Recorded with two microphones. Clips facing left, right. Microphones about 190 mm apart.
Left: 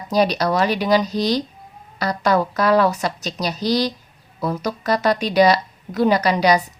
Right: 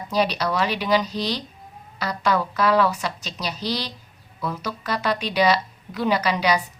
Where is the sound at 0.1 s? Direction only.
40° left (ahead or behind).